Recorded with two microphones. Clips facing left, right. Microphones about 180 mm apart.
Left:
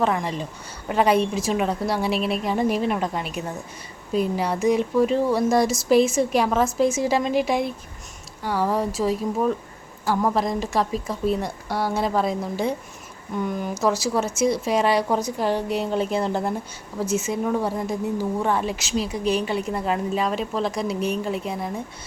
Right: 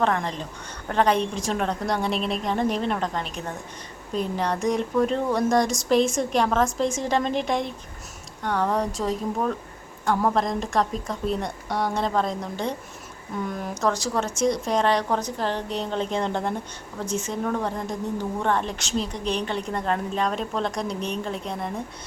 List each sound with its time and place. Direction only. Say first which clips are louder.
0.0 s speech: left 1 dB; 5° left (ahead or behind)